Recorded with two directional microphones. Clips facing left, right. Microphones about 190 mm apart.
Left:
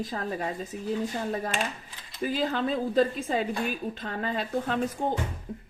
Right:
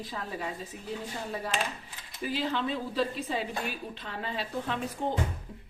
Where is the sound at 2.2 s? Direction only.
45° left (ahead or behind).